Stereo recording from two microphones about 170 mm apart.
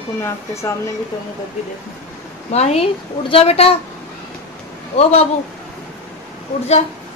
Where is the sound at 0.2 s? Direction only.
15° left (ahead or behind).